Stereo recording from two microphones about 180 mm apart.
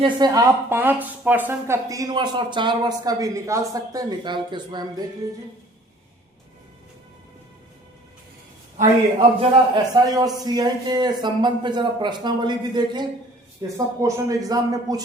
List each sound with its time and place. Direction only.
0.0 s speech: 20° right (ahead or behind)
9.4 s speech: 25° right (ahead or behind)